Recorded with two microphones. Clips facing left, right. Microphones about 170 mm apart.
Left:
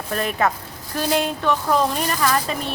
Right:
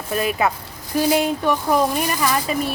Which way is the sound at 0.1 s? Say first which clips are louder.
Right 1 dB; 5° right (ahead or behind).